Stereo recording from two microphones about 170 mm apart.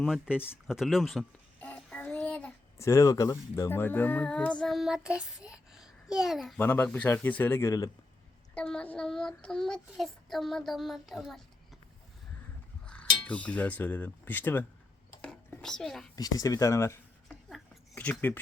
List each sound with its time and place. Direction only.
0.0 s child singing: 5° right (ahead or behind)
1.6 s a child's voice: 10° left (ahead or behind)
6.6 s speech: 10° left (ahead or behind)
8.5 s child singing: 5° left (ahead or behind)
12.8 s music: 5° left (ahead or behind)
13.2 s speech: 10° left (ahead or behind)
15.2 s a sound: 5° left (ahead or behind)
16.1 s speech: 20° left (ahead or behind)
17.2 s a sound: 5° left (ahead or behind)